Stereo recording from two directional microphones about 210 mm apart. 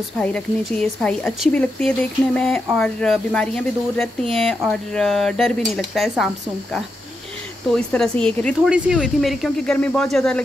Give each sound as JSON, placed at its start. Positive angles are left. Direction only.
{"t": 0.2, "sound": "speech", "side_deg": 5}
{"t": 8.5, "sound": "speech", "side_deg": -5}